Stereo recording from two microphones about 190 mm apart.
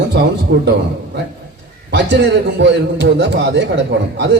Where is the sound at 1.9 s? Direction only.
65° right (ahead or behind).